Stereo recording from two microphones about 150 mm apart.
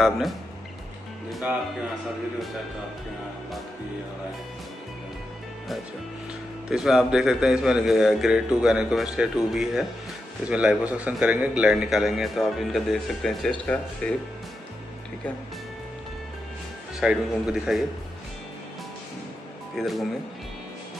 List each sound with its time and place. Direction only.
0.0 s a man's voice: centre (ahead or behind)
6.7 s a man's voice: 5° right (ahead or behind)
17.0 s a man's voice: 5° right (ahead or behind)
19.7 s a man's voice: centre (ahead or behind)